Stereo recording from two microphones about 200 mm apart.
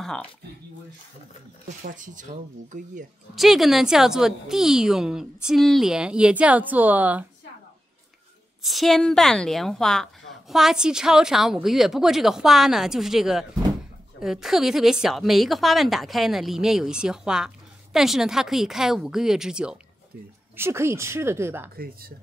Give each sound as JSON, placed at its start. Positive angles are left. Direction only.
{"t": 0.0, "sound": "speech", "side_deg": 5}
{"t": 1.8, "sound": "speech", "side_deg": -40}
{"t": 3.3, "sound": "a woman's voice", "side_deg": 0}
{"t": 8.6, "sound": "a woman's voice", "side_deg": 0}
{"t": 21.7, "sound": "speech", "side_deg": -50}